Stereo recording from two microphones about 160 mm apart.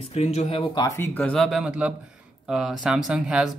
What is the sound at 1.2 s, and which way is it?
Speech, 5° left (ahead or behind).